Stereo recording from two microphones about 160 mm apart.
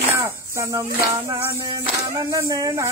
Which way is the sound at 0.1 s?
20° right (ahead or behind).